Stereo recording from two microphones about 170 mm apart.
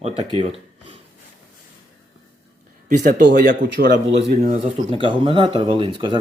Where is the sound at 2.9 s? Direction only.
50° right (ahead or behind).